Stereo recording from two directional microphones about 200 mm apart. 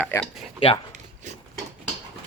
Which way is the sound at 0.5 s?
25° left (ahead or behind).